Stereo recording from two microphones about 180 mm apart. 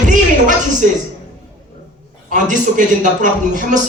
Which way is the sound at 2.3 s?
45° right (ahead or behind).